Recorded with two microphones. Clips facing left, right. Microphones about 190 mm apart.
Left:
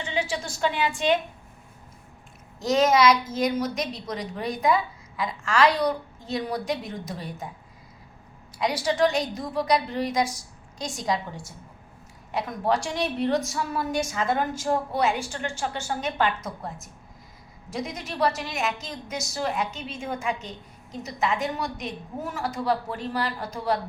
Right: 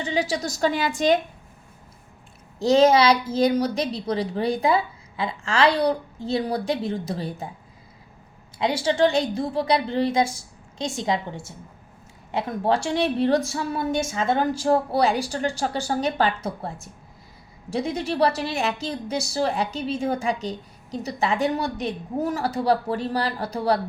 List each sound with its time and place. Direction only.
0.0 s a woman's voice: 40° right (ahead or behind)
2.6 s a woman's voice: 30° right (ahead or behind)
8.5 s a woman's voice: 25° right (ahead or behind)